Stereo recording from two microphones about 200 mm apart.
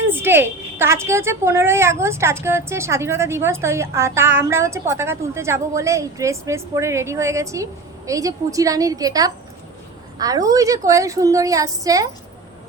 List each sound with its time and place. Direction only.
0.1 s a woman's voice: 10° right (ahead or behind)